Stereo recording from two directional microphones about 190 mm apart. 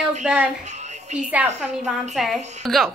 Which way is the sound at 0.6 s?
35° right (ahead or behind).